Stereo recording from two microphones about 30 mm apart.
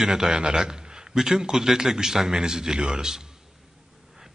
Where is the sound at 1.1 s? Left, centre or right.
Centre.